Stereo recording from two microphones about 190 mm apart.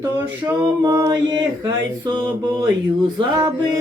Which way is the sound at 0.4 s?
20° right (ahead or behind).